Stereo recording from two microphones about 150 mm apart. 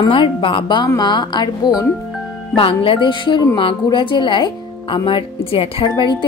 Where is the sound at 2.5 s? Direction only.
35° left (ahead or behind).